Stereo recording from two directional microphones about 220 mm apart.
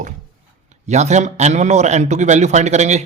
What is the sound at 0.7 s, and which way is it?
A man's voice, 30° right (ahead or behind).